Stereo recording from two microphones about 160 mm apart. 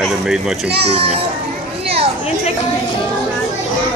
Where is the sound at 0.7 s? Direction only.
90° right.